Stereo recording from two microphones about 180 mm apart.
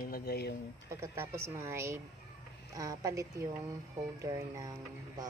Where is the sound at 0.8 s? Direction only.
15° right (ahead or behind).